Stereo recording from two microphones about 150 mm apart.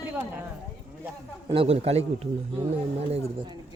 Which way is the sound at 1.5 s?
40° right (ahead or behind).